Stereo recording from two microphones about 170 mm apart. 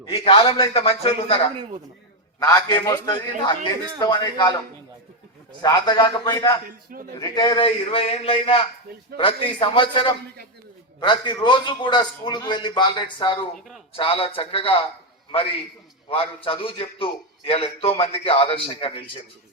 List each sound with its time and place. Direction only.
0.0 s a man's voice: 30° left (ahead or behind)
2.4 s a man's voice: 25° left (ahead or behind)
5.6 s a man's voice: 25° left (ahead or behind)
16.0 s a man's voice: 30° left (ahead or behind)